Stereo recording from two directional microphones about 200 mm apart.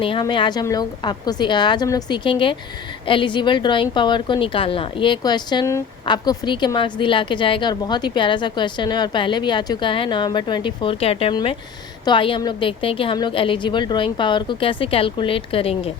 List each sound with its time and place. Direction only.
0.0 s a woman's voice: 25° left (ahead or behind)